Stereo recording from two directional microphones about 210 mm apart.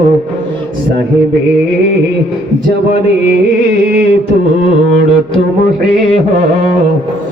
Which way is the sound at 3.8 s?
50° right (ahead or behind).